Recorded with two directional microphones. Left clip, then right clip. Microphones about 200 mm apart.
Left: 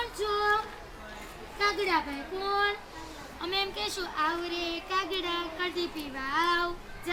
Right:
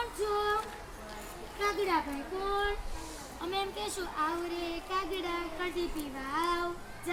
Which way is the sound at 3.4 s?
10° right (ahead or behind).